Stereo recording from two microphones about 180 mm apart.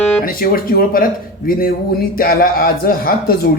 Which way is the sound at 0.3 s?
55° left (ahead or behind).